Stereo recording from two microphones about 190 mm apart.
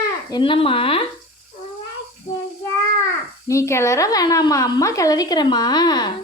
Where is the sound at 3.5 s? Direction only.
15° left (ahead or behind).